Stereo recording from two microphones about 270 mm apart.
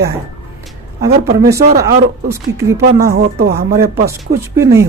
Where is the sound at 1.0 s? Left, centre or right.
Right.